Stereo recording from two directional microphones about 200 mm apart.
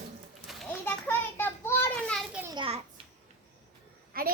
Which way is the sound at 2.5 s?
30° right (ahead or behind).